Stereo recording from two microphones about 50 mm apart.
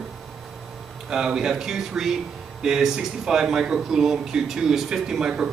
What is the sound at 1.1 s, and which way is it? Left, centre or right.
Speech, centre.